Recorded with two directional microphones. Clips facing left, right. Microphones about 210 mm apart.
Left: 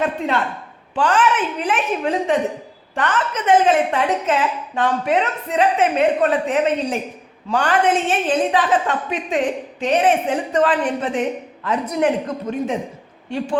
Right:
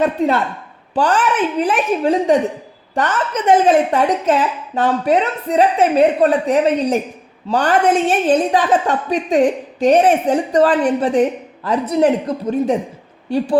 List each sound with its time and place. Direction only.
0.9 s a woman's voice: 40° right (ahead or behind)